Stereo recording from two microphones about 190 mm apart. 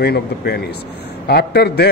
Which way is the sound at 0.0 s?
55° left (ahead or behind).